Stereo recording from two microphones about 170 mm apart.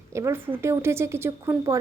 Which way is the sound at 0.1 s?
15° right (ahead or behind).